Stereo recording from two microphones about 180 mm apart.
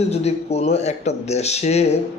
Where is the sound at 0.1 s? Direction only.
35° left (ahead or behind).